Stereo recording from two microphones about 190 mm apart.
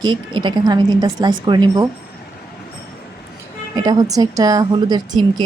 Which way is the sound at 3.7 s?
20° right (ahead or behind).